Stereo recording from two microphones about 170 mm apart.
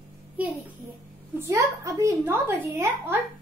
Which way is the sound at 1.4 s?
20° right (ahead or behind).